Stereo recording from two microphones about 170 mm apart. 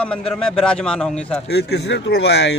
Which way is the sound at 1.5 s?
75° left (ahead or behind).